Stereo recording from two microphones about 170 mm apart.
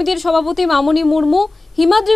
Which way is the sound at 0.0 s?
Centre (ahead or behind).